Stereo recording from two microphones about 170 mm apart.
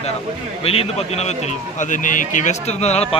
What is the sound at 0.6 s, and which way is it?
A man's voice, 35° left (ahead or behind).